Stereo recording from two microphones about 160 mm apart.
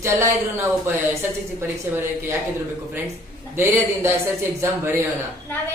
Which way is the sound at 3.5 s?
15° right (ahead or behind).